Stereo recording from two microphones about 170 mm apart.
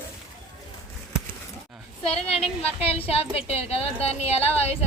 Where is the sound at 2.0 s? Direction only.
35° left (ahead or behind).